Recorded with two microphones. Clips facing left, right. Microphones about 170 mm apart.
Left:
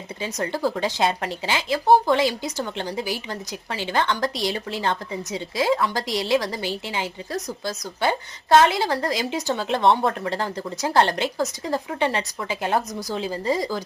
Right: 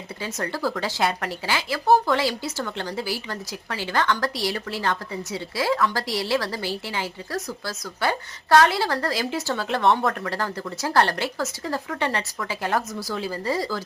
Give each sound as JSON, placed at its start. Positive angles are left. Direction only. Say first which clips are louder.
{"t": 0.2, "sound": "a woman's voice", "louder": "left 3 dB", "side_deg": 20}